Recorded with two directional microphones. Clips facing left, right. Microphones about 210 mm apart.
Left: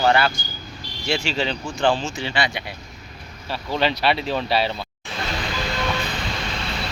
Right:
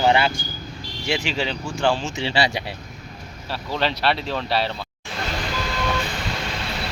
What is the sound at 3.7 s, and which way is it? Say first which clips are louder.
Speech: left 2 dB; centre (ahead or behind).